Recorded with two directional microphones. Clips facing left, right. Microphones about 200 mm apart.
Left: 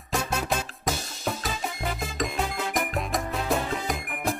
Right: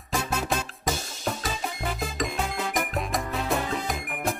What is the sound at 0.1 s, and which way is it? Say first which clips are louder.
Music: even; centre (ahead or behind).